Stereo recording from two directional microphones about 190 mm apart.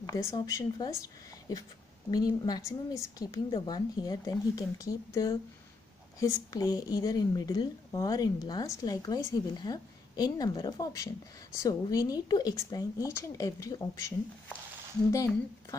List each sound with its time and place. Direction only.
0.0 s a woman's voice: 15° left (ahead or behind)